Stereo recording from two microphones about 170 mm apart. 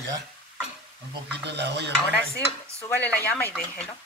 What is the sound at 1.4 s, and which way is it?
Cutlery, 80° right.